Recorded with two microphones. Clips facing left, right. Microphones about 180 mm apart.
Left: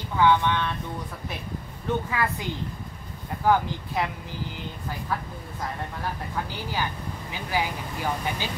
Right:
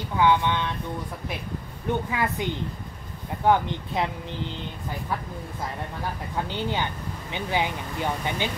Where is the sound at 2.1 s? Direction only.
20° right (ahead or behind).